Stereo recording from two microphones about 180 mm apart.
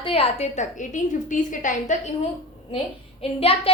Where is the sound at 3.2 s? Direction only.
30° left (ahead or behind).